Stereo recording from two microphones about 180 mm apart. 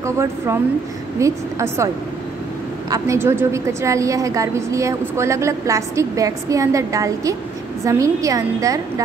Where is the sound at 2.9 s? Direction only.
15° right (ahead or behind).